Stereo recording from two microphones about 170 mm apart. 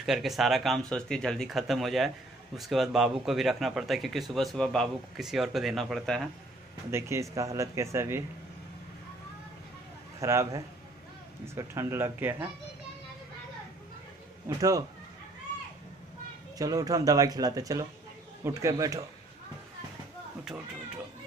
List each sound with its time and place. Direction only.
0.0 s speech: centre (ahead or behind)
6.9 s speech: 15° right (ahead or behind)
10.2 s speech: 15° right (ahead or behind)
14.6 s speech: 20° right (ahead or behind)
16.5 s speech: 20° right (ahead or behind)